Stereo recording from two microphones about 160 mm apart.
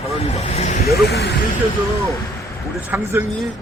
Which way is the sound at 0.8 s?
90° left.